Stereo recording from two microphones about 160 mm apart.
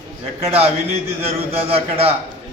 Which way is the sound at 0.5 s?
40° right (ahead or behind).